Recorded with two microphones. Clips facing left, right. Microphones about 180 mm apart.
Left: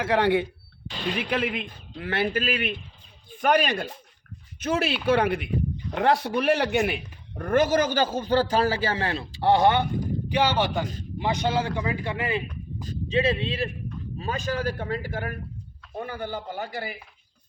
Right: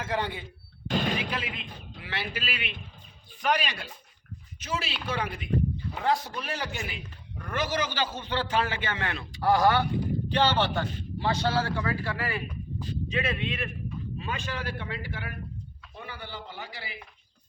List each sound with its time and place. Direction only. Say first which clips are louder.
0.0 s speech: left 10 dB; 70° left (ahead or behind)
0.9 s a sound: right 3 dB; 50° right (ahead or behind)
1.1 s a man's voice: left 6 dB; 60° left (ahead or behind); by 9.8 s 25° left (ahead or behind)
10.2 s a man's voice: left 2 dB; 10° left (ahead or behind); by 17.0 s 50° left (ahead or behind)